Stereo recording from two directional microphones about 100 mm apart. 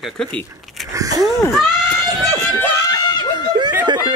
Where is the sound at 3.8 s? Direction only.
50° right (ahead or behind).